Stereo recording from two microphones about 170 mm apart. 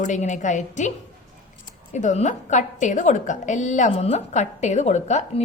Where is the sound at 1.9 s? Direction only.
45° left (ahead or behind).